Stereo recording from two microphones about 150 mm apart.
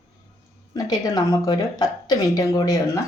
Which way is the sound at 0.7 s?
25° left (ahead or behind).